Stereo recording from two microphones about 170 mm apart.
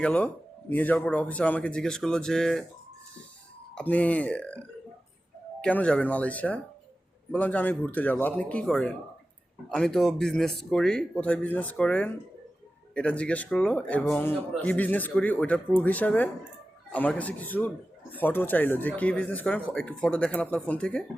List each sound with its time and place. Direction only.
0.0 s speech: 5° left (ahead or behind)
3.8 s speech: 10° left (ahead or behind)